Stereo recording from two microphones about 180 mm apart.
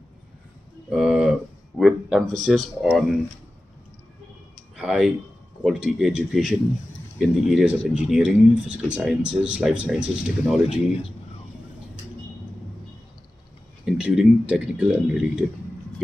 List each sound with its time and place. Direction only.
0.8 s speech: centre (ahead or behind)
4.7 s speech: 5° right (ahead or behind)
13.8 s speech: 5° right (ahead or behind)